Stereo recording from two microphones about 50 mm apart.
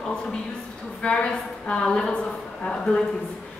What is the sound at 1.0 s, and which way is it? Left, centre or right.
A woman's voice, left.